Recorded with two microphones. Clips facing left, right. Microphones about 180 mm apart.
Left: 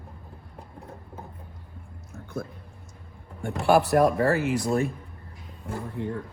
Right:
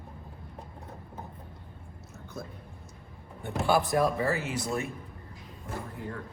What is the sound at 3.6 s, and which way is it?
Speech, 75° left (ahead or behind).